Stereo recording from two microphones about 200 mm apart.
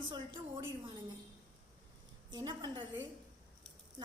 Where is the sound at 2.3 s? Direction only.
20° right (ahead or behind).